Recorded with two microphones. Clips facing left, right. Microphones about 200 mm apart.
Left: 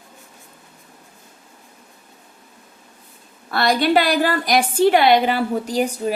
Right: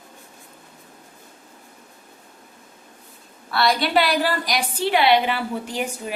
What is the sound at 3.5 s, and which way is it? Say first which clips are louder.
A woman's voice: left 3 dB; 45° left (ahead or behind).